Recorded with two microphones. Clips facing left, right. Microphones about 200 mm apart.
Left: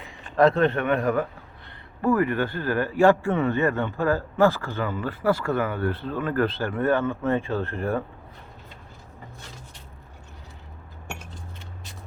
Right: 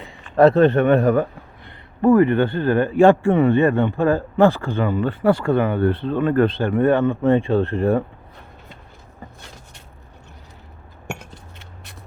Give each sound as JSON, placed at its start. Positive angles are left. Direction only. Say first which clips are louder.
{"t": 0.3, "sound": "speech", "louder": "right 6 dB", "side_deg": -40}
{"t": 7.0, "sound": "speech", "louder": "right 7 dB", "side_deg": -55}
{"t": 7.3, "sound": "speech", "louder": "right 8 dB", "side_deg": -30}